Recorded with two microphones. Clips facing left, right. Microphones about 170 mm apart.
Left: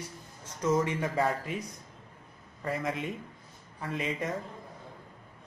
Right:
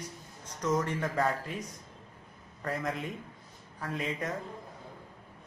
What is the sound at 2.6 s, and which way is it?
A man's voice, 5° left (ahead or behind).